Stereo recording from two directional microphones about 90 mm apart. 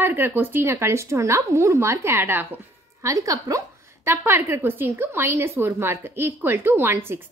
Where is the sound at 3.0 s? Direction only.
40° right (ahead or behind).